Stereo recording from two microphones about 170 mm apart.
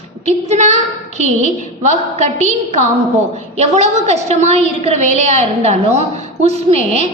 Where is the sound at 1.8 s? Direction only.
45° right (ahead or behind).